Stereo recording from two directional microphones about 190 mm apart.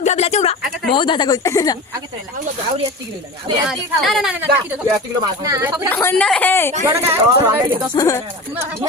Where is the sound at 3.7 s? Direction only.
Centre (ahead or behind); by 5.8 s 15° right (ahead or behind).